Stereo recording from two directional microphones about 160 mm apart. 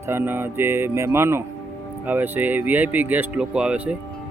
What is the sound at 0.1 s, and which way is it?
Speech, 15° right (ahead or behind).